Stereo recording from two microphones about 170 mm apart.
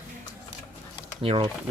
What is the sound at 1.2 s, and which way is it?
Speech, 30° right (ahead or behind).